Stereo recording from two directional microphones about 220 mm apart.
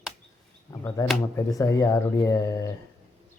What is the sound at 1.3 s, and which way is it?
A man's voice, 15° left (ahead or behind).